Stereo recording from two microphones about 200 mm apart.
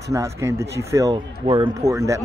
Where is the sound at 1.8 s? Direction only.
15° right (ahead or behind).